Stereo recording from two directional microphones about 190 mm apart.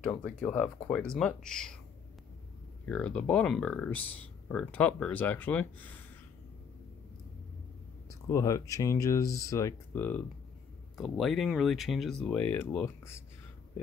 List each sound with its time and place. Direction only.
0.0 s speech: 5° left (ahead or behind)
2.8 s speech: 5° left (ahead or behind)
8.1 s speech: 15° left (ahead or behind)